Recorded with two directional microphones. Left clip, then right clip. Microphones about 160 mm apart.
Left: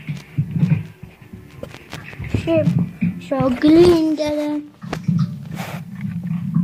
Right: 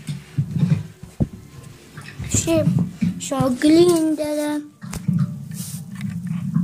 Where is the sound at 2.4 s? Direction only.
20° right (ahead or behind).